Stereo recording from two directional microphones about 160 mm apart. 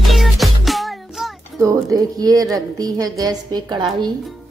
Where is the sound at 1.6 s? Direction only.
20° right (ahead or behind).